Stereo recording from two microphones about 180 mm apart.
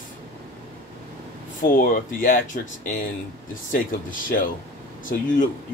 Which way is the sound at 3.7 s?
50° left (ahead or behind).